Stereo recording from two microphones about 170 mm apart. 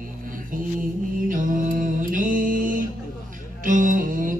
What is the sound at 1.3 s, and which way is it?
Music, 50° right (ahead or behind).